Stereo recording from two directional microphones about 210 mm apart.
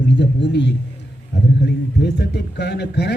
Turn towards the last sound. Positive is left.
turn(degrees=55)  # may be behind; listen again after turning